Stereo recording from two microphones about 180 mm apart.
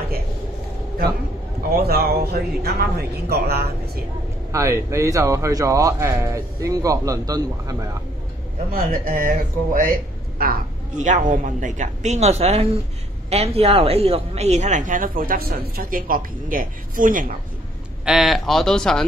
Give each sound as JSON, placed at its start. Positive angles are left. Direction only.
{"t": 1.8, "sound": "speech", "side_deg": -60}
{"t": 4.5, "sound": "speech", "side_deg": -15}
{"t": 8.7, "sound": "a woman's voice", "side_deg": -50}
{"t": 18.0, "sound": "speech", "side_deg": 0}